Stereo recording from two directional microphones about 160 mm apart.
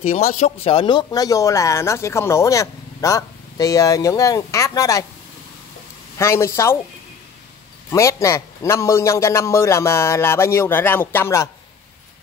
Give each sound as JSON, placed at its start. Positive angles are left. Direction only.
{"t": 0.1, "sound": "speech", "side_deg": 45}
{"t": 6.1, "sound": "a man's voice", "side_deg": 15}
{"t": 7.9, "sound": "a man's voice", "side_deg": 20}